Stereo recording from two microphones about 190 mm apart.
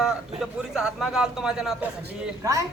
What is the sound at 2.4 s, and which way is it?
Speech, 15° right (ahead or behind).